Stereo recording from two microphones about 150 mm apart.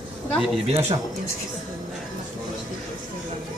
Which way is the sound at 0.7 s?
45° right (ahead or behind).